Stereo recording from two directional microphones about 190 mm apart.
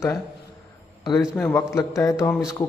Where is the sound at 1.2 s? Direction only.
5° left (ahead or behind).